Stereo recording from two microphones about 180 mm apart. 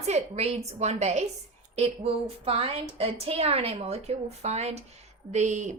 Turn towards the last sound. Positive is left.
turn(degrees=-40)  # may be behind; listen again after turning